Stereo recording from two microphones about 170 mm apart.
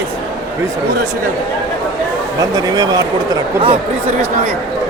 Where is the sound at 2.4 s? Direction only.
20° right (ahead or behind).